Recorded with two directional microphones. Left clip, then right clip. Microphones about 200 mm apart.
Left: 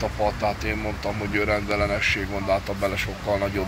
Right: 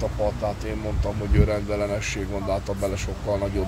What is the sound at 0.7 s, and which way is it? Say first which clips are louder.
Speech: left 2 dB; 15° right (ahead or behind).